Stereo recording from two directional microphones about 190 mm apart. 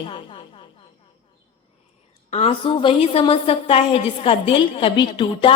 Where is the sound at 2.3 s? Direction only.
30° left (ahead or behind).